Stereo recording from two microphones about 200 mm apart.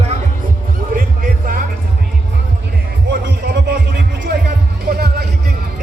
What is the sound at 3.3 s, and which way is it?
Music, 55° right (ahead or behind).